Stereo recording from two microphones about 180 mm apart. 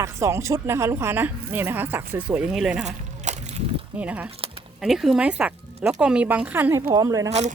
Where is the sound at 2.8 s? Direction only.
40° right (ahead or behind).